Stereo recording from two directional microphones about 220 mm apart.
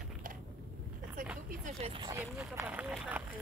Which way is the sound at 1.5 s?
30° right (ahead or behind).